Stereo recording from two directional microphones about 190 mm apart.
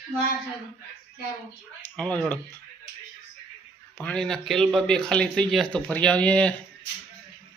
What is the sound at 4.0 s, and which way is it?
Speech, 5° left (ahead or behind).